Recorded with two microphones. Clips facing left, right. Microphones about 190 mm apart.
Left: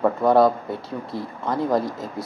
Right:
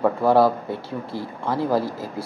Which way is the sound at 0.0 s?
5° right (ahead or behind).